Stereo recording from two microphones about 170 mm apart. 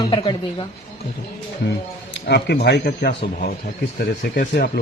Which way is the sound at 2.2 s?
75° left (ahead or behind).